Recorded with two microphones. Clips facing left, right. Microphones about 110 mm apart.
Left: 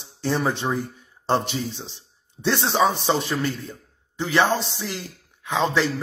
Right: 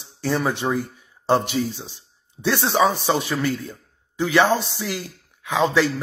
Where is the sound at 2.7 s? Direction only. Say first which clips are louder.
Right 2 dB; 40° right (ahead or behind).